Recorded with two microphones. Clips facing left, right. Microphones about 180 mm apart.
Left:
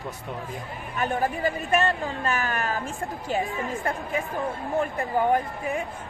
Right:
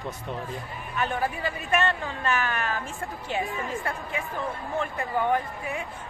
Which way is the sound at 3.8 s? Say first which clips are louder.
Left 4 dB; 40° left (ahead or behind).